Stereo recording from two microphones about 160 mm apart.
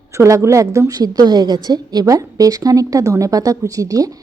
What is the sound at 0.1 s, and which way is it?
A woman's voice, 20° right (ahead or behind).